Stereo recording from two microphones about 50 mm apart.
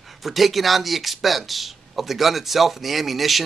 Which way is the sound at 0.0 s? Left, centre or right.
Centre.